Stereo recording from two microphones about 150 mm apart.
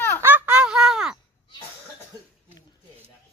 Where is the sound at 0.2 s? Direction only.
10° right (ahead or behind).